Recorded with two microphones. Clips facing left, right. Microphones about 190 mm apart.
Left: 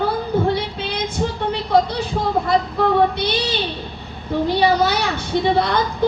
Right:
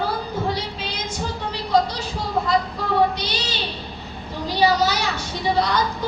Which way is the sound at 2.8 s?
55° left (ahead or behind).